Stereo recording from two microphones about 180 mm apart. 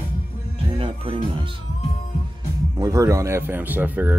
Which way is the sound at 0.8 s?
30° right (ahead or behind).